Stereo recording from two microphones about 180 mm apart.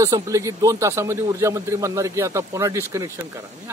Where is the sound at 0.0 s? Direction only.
20° right (ahead or behind).